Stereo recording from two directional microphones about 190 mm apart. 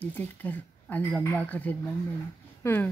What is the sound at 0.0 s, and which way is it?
A woman's voice, 10° left (ahead or behind).